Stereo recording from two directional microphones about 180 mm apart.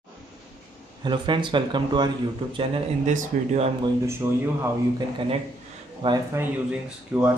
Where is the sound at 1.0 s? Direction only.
25° right (ahead or behind).